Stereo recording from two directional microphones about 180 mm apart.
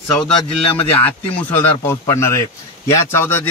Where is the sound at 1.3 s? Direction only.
10° left (ahead or behind).